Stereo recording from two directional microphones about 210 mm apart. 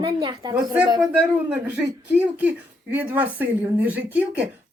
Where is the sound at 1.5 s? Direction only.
5° right (ahead or behind).